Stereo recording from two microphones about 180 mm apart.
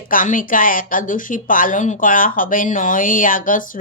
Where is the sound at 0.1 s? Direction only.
50° left (ahead or behind).